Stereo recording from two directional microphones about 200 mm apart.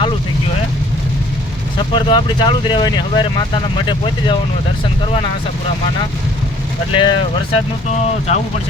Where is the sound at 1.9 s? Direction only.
25° left (ahead or behind).